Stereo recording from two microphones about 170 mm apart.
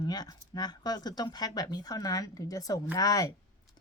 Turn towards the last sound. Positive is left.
turn(degrees=20)  # may be behind; listen again after turning